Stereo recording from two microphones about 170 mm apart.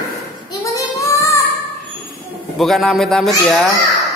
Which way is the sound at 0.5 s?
20° left (ahead or behind).